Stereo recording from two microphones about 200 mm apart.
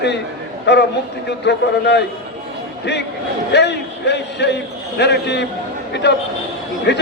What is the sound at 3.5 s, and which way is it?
A man's voice, 60° left (ahead or behind).